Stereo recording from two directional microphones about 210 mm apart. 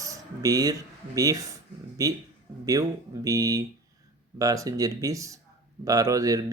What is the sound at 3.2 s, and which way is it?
Speech, 15° right (ahead or behind).